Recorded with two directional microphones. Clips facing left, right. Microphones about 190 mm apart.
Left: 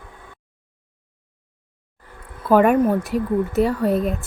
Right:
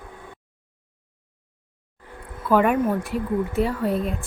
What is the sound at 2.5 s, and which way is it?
Speech, 45° left (ahead or behind).